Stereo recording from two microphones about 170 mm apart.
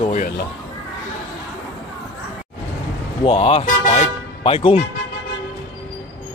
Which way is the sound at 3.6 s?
45° left (ahead or behind).